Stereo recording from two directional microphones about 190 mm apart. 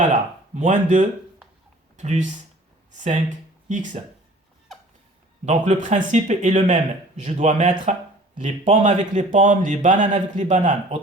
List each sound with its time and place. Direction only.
0.5 s speech: 40° right (ahead or behind)
5.5 s speech: 40° right (ahead or behind)